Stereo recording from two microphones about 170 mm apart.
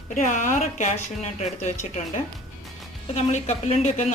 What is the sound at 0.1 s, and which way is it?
Speech, 50° left (ahead or behind).